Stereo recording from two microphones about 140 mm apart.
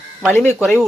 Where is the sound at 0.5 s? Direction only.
Centre (ahead or behind).